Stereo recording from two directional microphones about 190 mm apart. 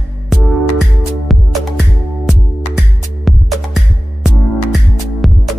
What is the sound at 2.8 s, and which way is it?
Music, centre (ahead or behind).